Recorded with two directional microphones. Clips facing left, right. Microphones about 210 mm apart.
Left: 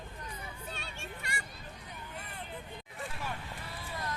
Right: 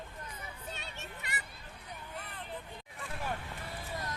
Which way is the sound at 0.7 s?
20° right (ahead or behind).